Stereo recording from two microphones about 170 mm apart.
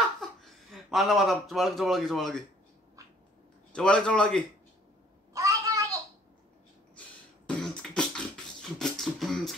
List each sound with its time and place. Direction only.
0.2 s speech: centre (ahead or behind)
3.7 s a man's voice: 5° left (ahead or behind)
5.3 s a sound: 20° right (ahead or behind)
7.4 s beatboxing: 5° left (ahead or behind)